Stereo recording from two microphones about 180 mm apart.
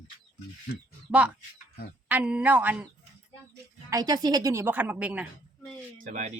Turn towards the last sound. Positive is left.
turn(degrees=-45)  # may be behind; listen again after turning